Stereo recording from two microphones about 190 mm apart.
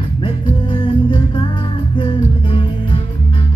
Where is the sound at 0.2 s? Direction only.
25° left (ahead or behind).